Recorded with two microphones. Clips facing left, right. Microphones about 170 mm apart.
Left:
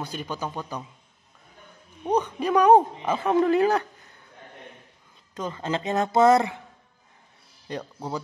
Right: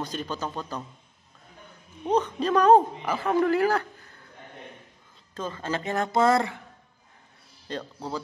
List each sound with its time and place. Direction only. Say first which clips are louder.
0.0 s a man's voice: even; 10° left (ahead or behind)
2.0 s a man's voice: even; 15° left (ahead or behind)
5.3 s a man's voice: left 2 dB; 15° left (ahead or behind)
7.6 s a man's voice: left 1 dB; 15° left (ahead or behind)